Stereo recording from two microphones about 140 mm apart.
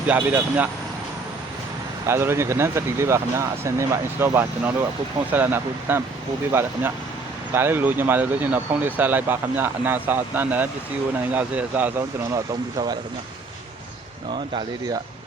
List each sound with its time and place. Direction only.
0.2 s speech: 15° right (ahead or behind)
2.0 s speech: 20° right (ahead or behind)
12.3 s speech: 30° right (ahead or behind)
14.3 s speech: 35° right (ahead or behind)